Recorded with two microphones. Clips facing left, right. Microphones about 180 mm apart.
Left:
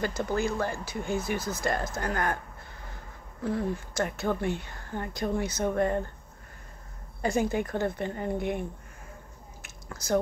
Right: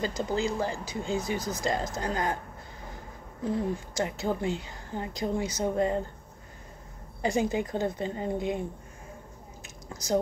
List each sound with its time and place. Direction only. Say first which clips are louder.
0.0 s speech: even; 20° right (ahead or behind)
3.4 s speech: even; 15° right (ahead or behind)
7.2 s speech: even; 15° right (ahead or behind)
9.8 s speech: even; 15° right (ahead or behind)